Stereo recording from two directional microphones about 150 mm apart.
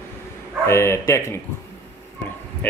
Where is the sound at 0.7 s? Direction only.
20° left (ahead or behind).